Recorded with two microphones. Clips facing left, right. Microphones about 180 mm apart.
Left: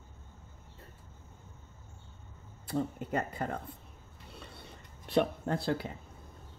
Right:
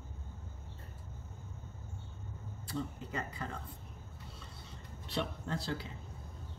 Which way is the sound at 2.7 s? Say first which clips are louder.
Left 7 dB; 55° left (ahead or behind).